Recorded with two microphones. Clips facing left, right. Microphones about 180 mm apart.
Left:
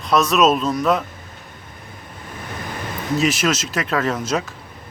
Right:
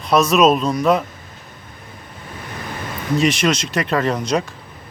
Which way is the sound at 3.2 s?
5° left (ahead or behind).